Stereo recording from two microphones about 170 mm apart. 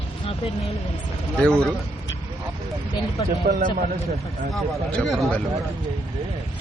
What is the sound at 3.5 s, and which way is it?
Speech, 65° right (ahead or behind).